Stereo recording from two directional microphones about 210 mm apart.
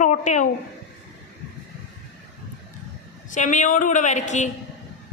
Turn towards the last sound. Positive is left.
turn(degrees=35)  # may be behind; listen again after turning